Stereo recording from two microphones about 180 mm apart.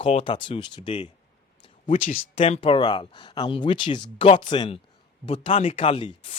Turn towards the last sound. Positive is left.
turn(degrees=30)  # may be behind; listen again after turning